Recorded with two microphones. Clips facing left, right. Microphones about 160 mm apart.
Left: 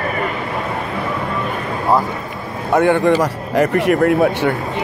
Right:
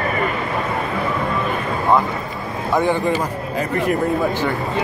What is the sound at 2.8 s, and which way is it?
Speech, 70° left (ahead or behind).